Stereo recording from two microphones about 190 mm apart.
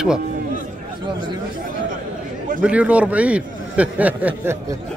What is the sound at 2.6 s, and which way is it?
A man's voice, 5° right (ahead or behind).